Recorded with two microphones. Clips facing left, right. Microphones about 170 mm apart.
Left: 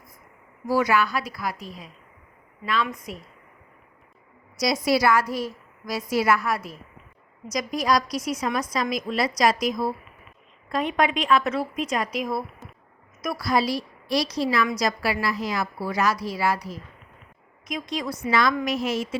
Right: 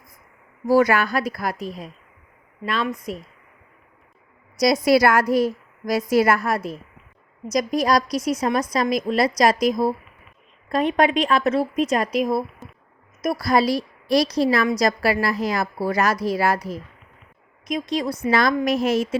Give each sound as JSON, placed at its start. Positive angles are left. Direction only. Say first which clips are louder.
{"t": 0.7, "sound": "a woman's voice", "louder": "right 5 dB", "side_deg": -50}
{"t": 2.9, "sound": "speech", "louder": "right 6 dB", "side_deg": -30}
{"t": 4.6, "sound": "a woman's voice", "louder": "right 5 dB", "side_deg": -50}
{"t": 7.4, "sound": "a woman's voice", "louder": "right 4 dB", "side_deg": -35}
{"t": 8.1, "sound": "a woman's voice", "louder": "right 5 dB", "side_deg": 10}
{"t": 8.4, "sound": "a woman's voice", "louder": "right 4 dB", "side_deg": -40}
{"t": 12.6, "sound": "a sound", "louder": "right 3 dB", "side_deg": 0}
{"t": 13.2, "sound": "a woman's voice", "louder": "right 4 dB", "side_deg": -45}
{"t": 18.3, "sound": "a woman's voice", "louder": "right 3 dB", "side_deg": -45}